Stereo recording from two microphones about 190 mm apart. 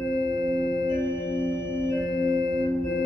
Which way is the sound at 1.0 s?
75° right (ahead or behind).